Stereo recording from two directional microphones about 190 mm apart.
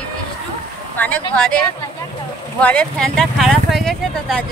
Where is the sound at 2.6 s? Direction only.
5° left (ahead or behind).